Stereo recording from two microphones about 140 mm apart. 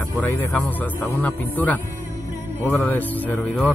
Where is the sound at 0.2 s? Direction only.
15° left (ahead or behind).